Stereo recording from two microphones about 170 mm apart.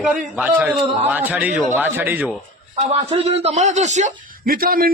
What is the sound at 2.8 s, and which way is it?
A man's voice, 40° right (ahead or behind).